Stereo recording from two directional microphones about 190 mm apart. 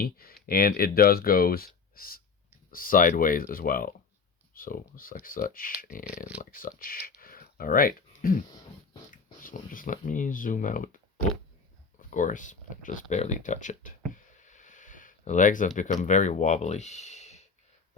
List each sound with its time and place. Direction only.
0.0 s speech: 50° left (ahead or behind)
9.4 s speech: 45° left (ahead or behind)